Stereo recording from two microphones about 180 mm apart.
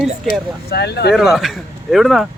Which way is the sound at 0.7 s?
65° left (ahead or behind).